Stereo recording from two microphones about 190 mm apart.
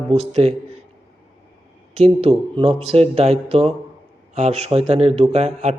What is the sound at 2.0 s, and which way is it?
A man's voice, 30° right (ahead or behind).